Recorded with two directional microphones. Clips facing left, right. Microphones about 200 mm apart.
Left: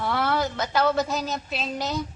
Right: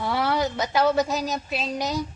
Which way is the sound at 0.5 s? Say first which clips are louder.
Right 2 dB; 15° right (ahead or behind).